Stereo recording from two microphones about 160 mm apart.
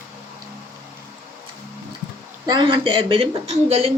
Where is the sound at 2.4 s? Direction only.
30° right (ahead or behind).